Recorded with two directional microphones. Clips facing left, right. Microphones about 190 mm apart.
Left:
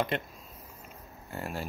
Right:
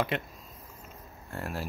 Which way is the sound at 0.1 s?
Centre (ahead or behind).